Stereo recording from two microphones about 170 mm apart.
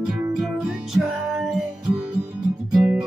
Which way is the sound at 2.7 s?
5° right (ahead or behind).